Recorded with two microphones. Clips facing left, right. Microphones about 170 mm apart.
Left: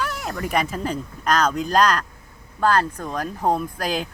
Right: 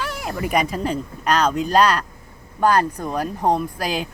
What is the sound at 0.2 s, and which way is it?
Speech, 5° right (ahead or behind).